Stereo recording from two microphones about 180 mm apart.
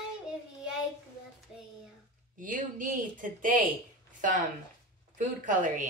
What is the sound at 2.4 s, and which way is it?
Speech, 50° right (ahead or behind).